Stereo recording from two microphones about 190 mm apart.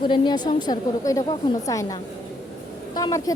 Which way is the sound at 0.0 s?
25° left (ahead or behind).